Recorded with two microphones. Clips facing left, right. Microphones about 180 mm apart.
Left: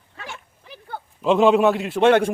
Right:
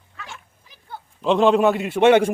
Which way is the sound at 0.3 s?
65° left (ahead or behind).